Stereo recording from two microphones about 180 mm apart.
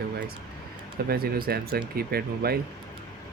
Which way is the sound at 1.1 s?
55° right (ahead or behind).